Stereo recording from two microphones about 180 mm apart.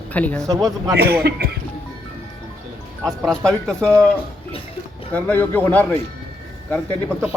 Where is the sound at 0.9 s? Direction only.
60° right (ahead or behind).